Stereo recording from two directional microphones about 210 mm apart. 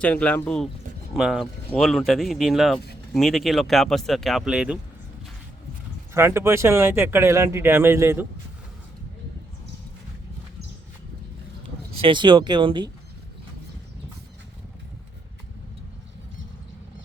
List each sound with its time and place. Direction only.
0.0 s speech: 5° left (ahead or behind)
6.1 s speech: 10° right (ahead or behind)
12.0 s speech: 20° right (ahead or behind)